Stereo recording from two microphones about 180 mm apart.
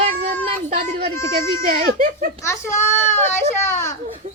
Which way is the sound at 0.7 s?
60° right (ahead or behind).